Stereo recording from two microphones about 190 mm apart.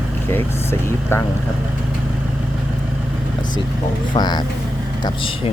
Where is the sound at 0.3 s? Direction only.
10° left (ahead or behind).